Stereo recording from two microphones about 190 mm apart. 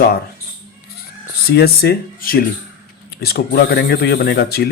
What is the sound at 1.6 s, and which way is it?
Speech, 55° left (ahead or behind).